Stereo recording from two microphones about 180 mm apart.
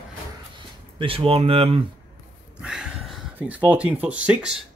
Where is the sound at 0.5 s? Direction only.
30° right (ahead or behind).